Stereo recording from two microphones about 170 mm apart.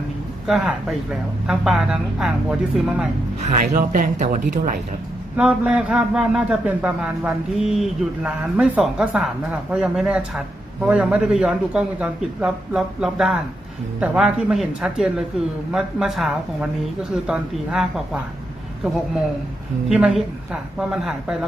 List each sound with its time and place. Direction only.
0.4 s a man's voice: centre (ahead or behind)
3.5 s speech: 55° right (ahead or behind)
5.4 s a man's voice: 5° right (ahead or behind)
19.9 s a man's voice: 5° right (ahead or behind)